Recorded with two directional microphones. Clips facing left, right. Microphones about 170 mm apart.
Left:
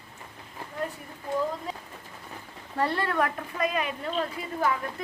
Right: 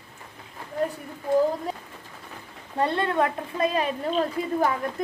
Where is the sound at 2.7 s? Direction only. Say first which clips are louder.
Right 3 dB; 20° right (ahead or behind).